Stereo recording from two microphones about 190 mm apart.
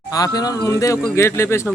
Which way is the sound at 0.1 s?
20° left (ahead or behind).